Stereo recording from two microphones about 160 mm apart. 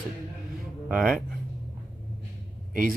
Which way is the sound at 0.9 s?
5° right (ahead or behind).